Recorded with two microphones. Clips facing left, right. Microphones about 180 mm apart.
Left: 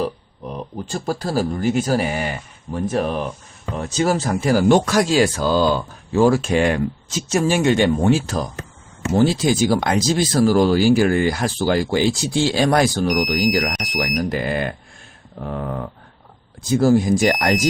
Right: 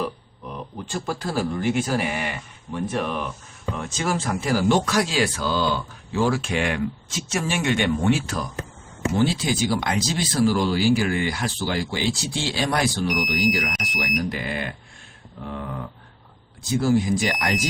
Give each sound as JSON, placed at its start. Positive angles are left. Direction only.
{"t": 0.0, "sound": "speech", "side_deg": 40}